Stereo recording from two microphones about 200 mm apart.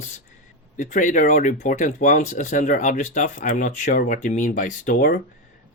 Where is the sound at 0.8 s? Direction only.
40° left (ahead or behind).